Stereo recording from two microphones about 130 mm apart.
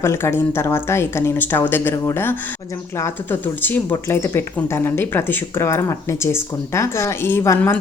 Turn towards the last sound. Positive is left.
turn(degrees=20)  # may be behind; listen again after turning